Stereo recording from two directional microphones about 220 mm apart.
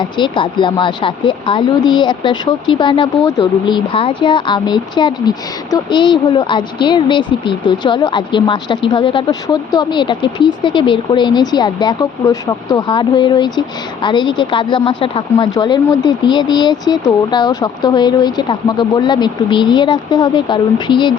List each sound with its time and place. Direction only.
0.0 s speech: 20° left (ahead or behind)